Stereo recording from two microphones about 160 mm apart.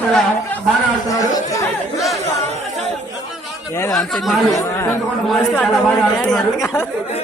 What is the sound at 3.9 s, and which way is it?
Speech, centre (ahead or behind).